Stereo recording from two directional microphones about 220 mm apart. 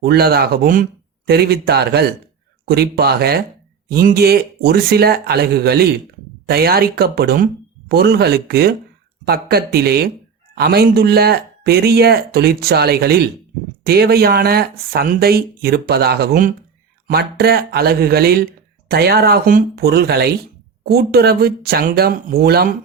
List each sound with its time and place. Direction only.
0.0 s speech: 45° right (ahead or behind)